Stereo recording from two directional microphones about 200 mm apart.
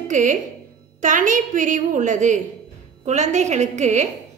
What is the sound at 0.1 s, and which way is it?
A woman's voice, 40° right (ahead or behind).